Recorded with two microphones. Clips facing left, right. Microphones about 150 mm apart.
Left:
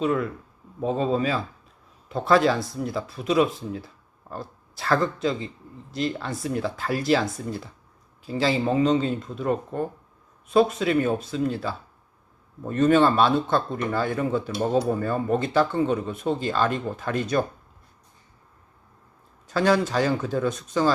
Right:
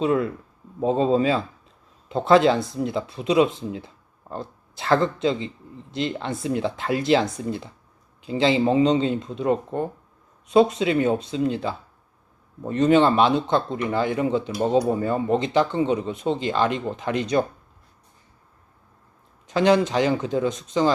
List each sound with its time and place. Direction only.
0.0 s speech: 25° right (ahead or behind)
19.5 s speech: 20° right (ahead or behind)